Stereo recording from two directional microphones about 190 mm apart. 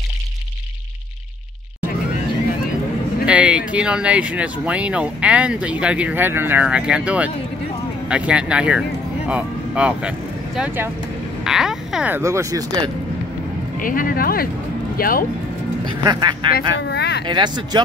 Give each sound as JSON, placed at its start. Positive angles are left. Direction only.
{"t": 3.3, "sound": "speech", "side_deg": -5}
{"t": 13.7, "sound": "speech", "side_deg": 45}
{"t": 15.8, "sound": "speech", "side_deg": -20}
{"t": 16.5, "sound": "speech", "side_deg": 60}
{"t": 17.3, "sound": "speech", "side_deg": -25}